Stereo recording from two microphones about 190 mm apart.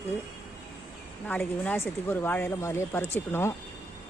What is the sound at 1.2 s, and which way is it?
Speech, 5° left (ahead or behind).